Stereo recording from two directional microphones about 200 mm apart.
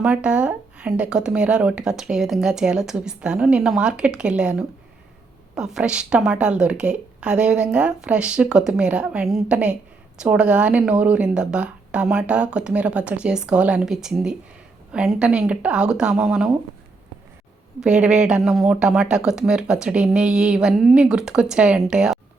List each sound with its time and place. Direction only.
0.0 s speech: 5° right (ahead or behind)
17.7 s speech: 5° right (ahead or behind)